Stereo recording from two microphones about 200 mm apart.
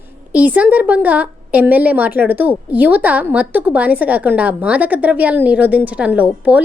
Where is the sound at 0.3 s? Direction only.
10° right (ahead or behind).